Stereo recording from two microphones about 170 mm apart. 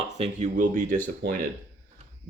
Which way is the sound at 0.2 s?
45° right (ahead or behind).